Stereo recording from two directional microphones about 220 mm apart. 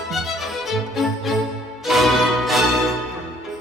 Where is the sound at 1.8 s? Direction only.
Centre (ahead or behind).